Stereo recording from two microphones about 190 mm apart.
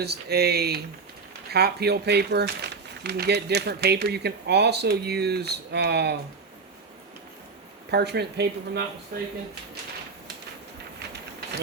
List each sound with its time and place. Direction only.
0.0 s speech: 60° right (ahead or behind)
7.9 s speech: 60° right (ahead or behind)
11.1 s a sound: 60° right (ahead or behind)